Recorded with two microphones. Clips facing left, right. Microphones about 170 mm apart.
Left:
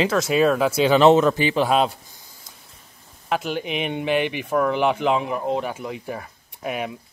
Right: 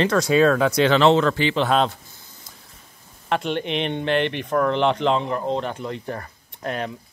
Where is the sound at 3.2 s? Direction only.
5° left (ahead or behind).